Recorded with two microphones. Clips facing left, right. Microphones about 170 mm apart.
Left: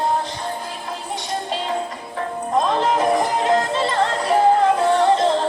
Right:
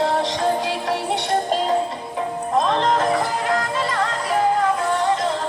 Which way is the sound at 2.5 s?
Centre (ahead or behind).